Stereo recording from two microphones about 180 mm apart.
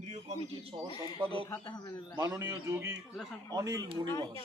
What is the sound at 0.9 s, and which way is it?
Speech, 25° left (ahead or behind).